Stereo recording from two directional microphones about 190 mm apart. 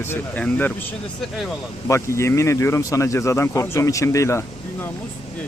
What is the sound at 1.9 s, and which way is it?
Speech, 15° left (ahead or behind).